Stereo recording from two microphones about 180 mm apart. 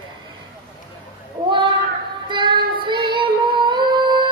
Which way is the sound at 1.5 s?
25° right (ahead or behind).